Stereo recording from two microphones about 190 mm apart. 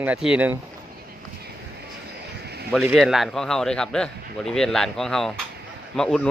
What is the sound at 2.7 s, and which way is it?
A man's voice, 5° right (ahead or behind).